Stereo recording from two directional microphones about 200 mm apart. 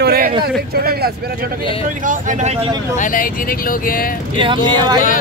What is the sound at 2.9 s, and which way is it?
Speech, 40° left (ahead or behind).